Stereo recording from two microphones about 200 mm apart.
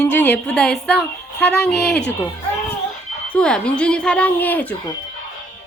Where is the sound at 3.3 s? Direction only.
5° left (ahead or behind).